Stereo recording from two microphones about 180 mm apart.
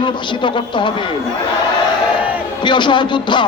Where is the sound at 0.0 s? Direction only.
25° left (ahead or behind).